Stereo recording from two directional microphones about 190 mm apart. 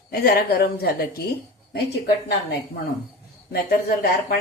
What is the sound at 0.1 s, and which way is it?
Speech, 50° left (ahead or behind).